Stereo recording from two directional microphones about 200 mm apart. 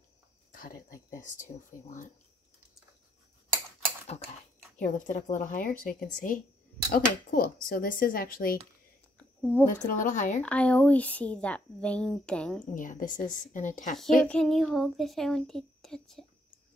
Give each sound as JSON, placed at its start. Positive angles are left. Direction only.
{"t": 0.5, "sound": "speech", "side_deg": 40}
{"t": 4.7, "sound": "speech", "side_deg": 40}
{"t": 9.4, "sound": "a woman's voice", "side_deg": 5}
{"t": 9.7, "sound": "speech", "side_deg": 40}
{"t": 10.4, "sound": "speech", "side_deg": 5}
{"t": 12.7, "sound": "speech", "side_deg": 40}
{"t": 14.2, "sound": "speech", "side_deg": 5}